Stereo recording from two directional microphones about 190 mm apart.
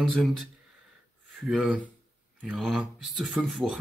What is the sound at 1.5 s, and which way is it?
Speech, 5° right (ahead or behind).